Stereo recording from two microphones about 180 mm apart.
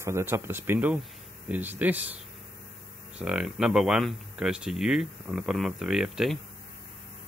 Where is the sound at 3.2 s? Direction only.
5° right (ahead or behind).